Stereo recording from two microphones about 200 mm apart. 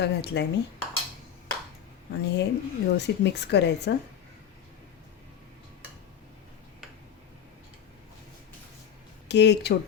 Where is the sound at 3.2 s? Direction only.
60° left (ahead or behind).